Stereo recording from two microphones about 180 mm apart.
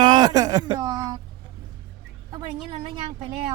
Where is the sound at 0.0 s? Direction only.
20° right (ahead or behind).